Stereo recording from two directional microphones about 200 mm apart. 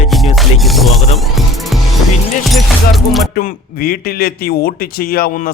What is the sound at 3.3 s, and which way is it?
A man's voice, 45° left (ahead or behind).